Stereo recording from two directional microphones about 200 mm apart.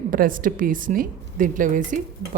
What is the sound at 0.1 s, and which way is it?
A woman's voice, 45° right (ahead or behind).